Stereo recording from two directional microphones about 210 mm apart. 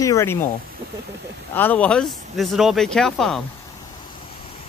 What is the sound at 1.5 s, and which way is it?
Speech, 10° left (ahead or behind).